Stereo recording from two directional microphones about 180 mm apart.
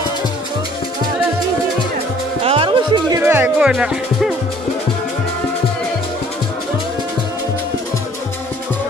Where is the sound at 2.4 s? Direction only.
30° right (ahead or behind); by 4.3 s 5° right (ahead or behind).